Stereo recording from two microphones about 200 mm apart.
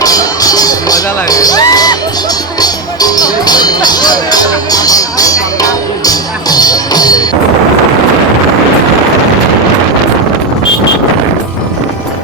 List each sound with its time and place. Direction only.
0.0 s music: 20° left (ahead or behind)